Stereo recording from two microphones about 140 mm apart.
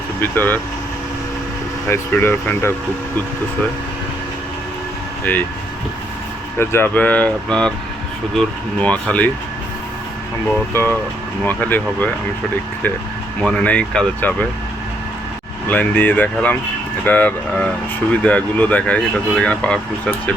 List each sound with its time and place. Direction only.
0.2 s speech: 15° left (ahead or behind)
1.9 s speech: 15° left (ahead or behind)
5.2 s speech: 10° left (ahead or behind)
6.6 s speech: 15° left (ahead or behind)
10.7 s speech: 20° left (ahead or behind)
13.4 s speech: 10° left (ahead or behind)
15.7 s speech: 10° left (ahead or behind)